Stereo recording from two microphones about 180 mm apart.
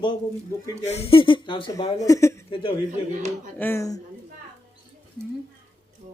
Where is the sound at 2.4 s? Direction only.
30° left (ahead or behind).